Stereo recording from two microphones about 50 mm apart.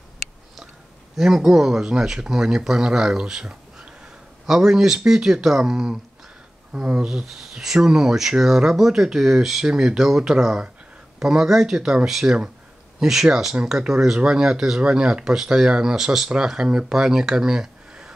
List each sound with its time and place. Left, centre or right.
1.1 s speech: centre
7.1 s speech: centre